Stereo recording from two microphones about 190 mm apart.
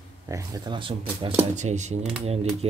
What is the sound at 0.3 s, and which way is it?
Speech, 20° right (ahead or behind).